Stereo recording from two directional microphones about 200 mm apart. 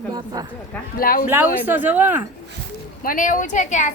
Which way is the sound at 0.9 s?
45° left (ahead or behind).